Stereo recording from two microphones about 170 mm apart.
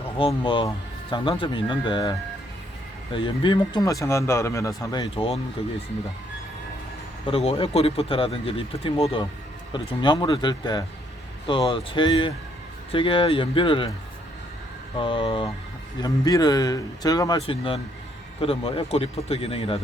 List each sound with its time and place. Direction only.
0.4 s speech: 30° left (ahead or behind)
7.3 s speech: 35° left (ahead or behind)
14.9 s speech: 30° left (ahead or behind)
17.4 s speech: 30° left (ahead or behind)